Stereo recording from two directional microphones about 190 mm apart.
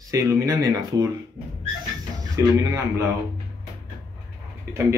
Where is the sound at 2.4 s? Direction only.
15° right (ahead or behind).